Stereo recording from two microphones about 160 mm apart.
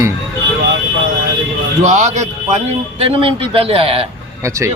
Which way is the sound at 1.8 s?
45° right (ahead or behind).